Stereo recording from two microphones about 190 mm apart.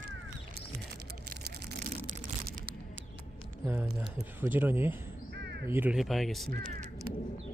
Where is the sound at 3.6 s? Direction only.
10° right (ahead or behind).